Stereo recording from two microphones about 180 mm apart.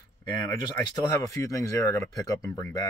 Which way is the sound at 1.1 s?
15° left (ahead or behind).